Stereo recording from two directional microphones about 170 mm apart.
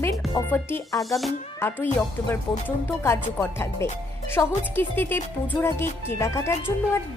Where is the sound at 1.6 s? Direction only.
10° left (ahead or behind).